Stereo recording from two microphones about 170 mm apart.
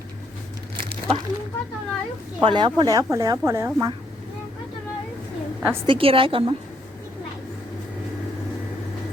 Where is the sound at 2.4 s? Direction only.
30° right (ahead or behind).